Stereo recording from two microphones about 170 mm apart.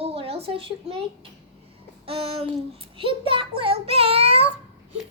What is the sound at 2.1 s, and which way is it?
A child's voice, 35° right (ahead or behind).